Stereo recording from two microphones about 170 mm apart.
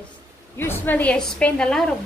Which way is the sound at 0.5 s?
10° left (ahead or behind).